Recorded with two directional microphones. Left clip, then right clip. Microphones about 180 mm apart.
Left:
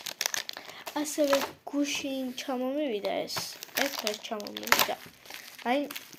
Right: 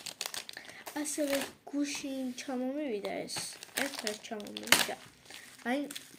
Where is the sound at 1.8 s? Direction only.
10° right (ahead or behind).